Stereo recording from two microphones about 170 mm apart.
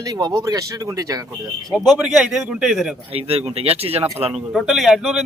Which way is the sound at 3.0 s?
35° right (ahead or behind).